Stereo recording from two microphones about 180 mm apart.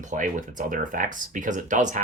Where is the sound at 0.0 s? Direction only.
45° right (ahead or behind).